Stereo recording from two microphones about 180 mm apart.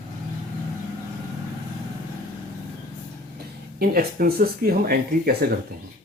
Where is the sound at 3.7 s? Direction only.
55° right (ahead or behind).